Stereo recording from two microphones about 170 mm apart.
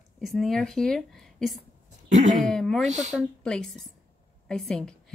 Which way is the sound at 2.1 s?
45° right (ahead or behind).